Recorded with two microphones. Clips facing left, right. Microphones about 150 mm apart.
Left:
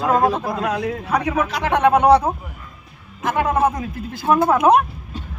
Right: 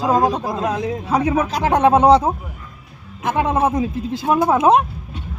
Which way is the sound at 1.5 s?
35° right (ahead or behind).